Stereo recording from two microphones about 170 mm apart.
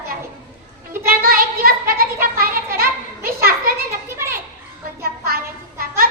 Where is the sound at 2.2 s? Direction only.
60° right (ahead or behind).